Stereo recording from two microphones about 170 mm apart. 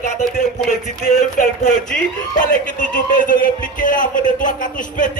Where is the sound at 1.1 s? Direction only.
45° left (ahead or behind).